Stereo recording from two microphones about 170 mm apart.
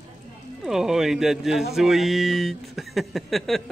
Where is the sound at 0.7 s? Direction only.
Centre (ahead or behind).